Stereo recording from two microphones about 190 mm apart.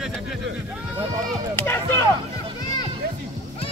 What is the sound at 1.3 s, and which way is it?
Speech, 10° left (ahead or behind).